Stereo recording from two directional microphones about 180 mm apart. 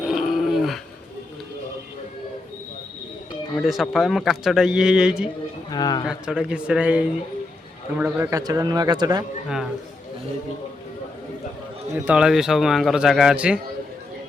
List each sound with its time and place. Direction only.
0.0 s dog: centre (ahead or behind)
3.6 s a man's voice: centre (ahead or behind)
5.7 s speech: 20° left (ahead or behind)
6.1 s a man's voice: 5° right (ahead or behind); by 9.2 s 25° right (ahead or behind)
12.0 s a man's voice: 5° right (ahead or behind)